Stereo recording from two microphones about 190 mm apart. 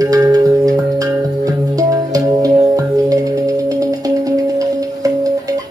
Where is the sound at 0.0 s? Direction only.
20° right (ahead or behind).